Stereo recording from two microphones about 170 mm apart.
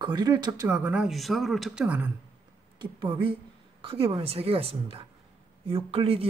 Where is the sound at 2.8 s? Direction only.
25° right (ahead or behind).